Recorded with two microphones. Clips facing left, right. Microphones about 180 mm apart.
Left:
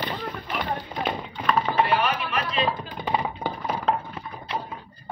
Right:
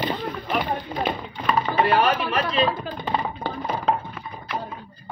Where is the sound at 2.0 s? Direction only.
35° right (ahead or behind).